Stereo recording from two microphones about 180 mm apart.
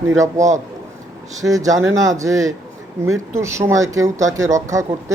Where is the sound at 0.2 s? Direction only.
15° right (ahead or behind).